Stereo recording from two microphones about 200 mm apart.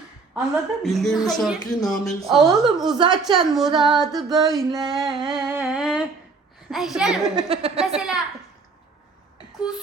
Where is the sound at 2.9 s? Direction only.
20° right (ahead or behind).